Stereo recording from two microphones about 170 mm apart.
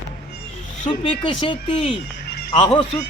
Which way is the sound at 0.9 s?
30° left (ahead or behind).